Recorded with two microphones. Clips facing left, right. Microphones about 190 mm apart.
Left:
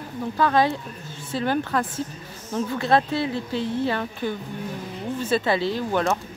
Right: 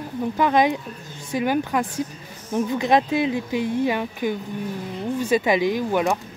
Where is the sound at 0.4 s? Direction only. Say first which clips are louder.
Right 1 dB; 15° right (ahead or behind).